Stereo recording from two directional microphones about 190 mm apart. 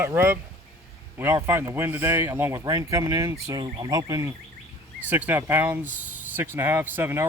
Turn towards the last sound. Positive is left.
turn(degrees=-10)  # may be behind; listen again after turning